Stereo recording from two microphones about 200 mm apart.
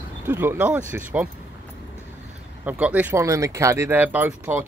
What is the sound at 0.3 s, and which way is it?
Speech, 10° right (ahead or behind).